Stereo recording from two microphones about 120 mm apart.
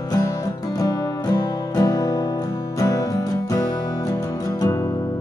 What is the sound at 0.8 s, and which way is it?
Music, 30° left (ahead or behind).